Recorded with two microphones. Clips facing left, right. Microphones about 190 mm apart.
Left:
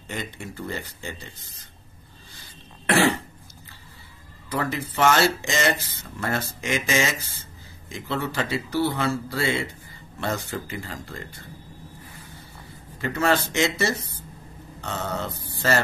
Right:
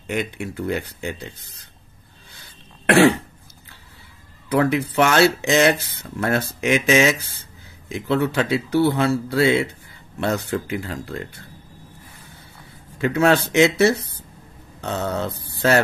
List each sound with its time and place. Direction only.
0.1 s speech: 65° right (ahead or behind)
2.9 s speech: 60° right (ahead or behind)
4.5 s speech: 65° right (ahead or behind)
13.0 s speech: 65° right (ahead or behind)